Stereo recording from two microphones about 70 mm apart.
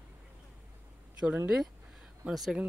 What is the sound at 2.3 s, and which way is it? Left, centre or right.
Speech, centre.